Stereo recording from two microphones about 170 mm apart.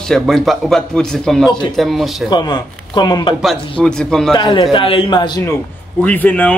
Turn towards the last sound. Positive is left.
turn(degrees=10)  # may be behind; listen again after turning